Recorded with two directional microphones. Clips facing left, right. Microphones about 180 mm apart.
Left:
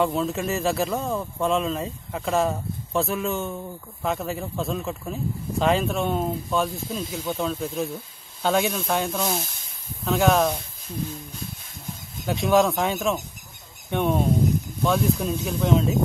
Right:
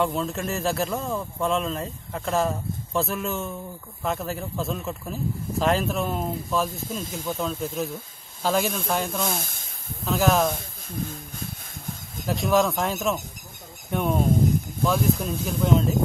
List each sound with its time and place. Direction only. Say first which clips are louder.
0.0 s speech: left 2 dB; centre (ahead or behind)
9.3 s speech: left 2 dB; 50° right (ahead or behind)
10.0 s speech: left 1 dB; centre (ahead or behind)
10.9 s speech: left 1 dB; 50° right (ahead or behind)
12.3 s speech: left 2 dB; centre (ahead or behind)